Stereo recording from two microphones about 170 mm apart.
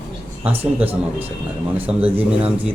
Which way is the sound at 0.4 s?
10° right (ahead or behind).